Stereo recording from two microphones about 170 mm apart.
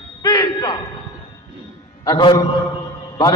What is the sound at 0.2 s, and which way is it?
Fire alarm, 20° left (ahead or behind).